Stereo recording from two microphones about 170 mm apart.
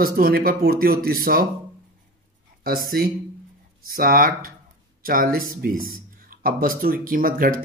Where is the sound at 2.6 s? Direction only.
60° right (ahead or behind).